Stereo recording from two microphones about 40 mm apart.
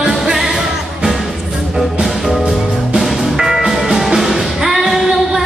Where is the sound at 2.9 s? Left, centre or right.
Centre.